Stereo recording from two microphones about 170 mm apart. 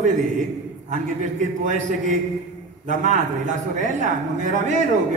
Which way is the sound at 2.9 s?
45° right (ahead or behind).